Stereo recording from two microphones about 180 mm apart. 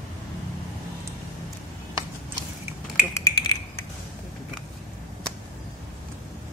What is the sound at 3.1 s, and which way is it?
Finger snapping, 15° left (ahead or behind).